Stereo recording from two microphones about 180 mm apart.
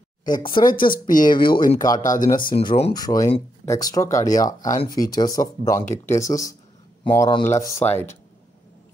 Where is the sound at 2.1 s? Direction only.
50° left (ahead or behind).